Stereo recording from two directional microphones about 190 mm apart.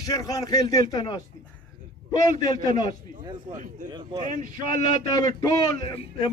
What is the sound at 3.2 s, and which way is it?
Speech, 25° right (ahead or behind).